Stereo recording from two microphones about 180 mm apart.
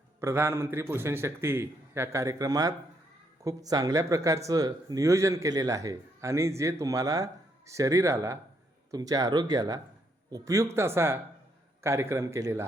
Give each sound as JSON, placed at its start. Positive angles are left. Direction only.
{"t": 0.2, "sound": "speech", "side_deg": -15}